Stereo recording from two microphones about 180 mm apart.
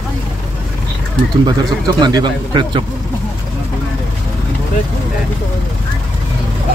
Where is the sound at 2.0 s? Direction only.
25° right (ahead or behind).